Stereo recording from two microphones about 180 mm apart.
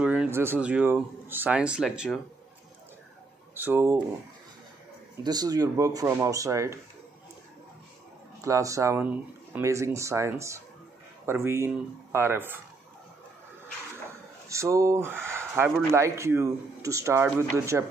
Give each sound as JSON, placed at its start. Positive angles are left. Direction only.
{"t": 0.0, "sound": "speech", "side_deg": -5}
{"t": 3.5, "sound": "speech", "side_deg": -10}
{"t": 5.2, "sound": "speech", "side_deg": -20}
{"t": 8.4, "sound": "speech", "side_deg": -15}
{"t": 14.5, "sound": "speech", "side_deg": -15}